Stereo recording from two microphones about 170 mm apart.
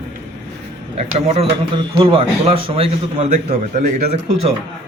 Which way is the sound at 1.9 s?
30° right (ahead or behind).